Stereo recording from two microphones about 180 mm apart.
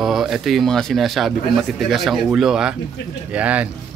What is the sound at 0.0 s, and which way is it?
A man's voice, centre (ahead or behind).